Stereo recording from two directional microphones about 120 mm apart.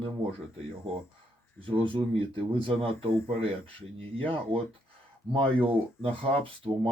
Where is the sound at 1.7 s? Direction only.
45° right (ahead or behind).